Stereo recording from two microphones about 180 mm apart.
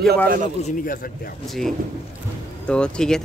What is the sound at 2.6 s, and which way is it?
Speech, 5° left (ahead or behind).